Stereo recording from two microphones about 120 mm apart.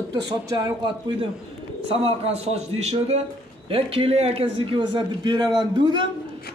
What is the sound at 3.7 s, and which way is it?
A man's voice, 50° right (ahead or behind).